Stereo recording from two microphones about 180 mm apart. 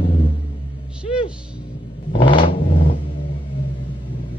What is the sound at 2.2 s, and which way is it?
Vehicle, 25° left (ahead or behind).